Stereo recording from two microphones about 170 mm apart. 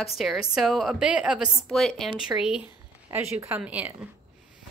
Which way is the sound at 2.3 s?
15° right (ahead or behind).